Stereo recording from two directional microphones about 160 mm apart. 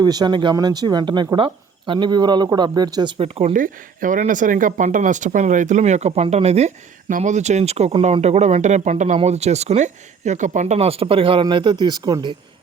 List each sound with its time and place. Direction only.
0.0 s speech: 25° right (ahead or behind)
3.5 s speech: 55° right (ahead or behind); by 12.4 s 25° right (ahead or behind)